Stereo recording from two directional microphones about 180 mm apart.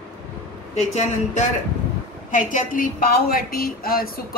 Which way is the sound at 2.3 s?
50° left (ahead or behind).